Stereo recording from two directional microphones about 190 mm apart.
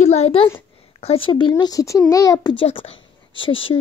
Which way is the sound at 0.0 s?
35° left (ahead or behind).